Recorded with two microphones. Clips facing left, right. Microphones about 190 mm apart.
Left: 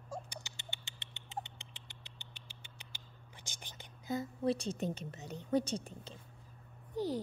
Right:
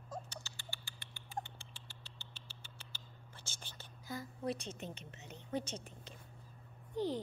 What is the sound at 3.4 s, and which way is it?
Speech, 15° left (ahead or behind).